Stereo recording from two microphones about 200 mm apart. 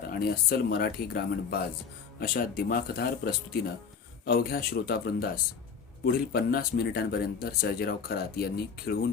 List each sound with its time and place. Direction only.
0.1 s speech: 50° left (ahead or behind)